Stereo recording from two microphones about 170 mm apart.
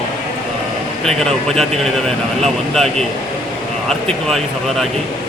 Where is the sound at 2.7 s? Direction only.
5° left (ahead or behind).